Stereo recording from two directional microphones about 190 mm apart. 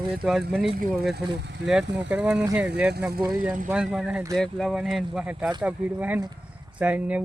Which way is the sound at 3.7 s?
5° right (ahead or behind).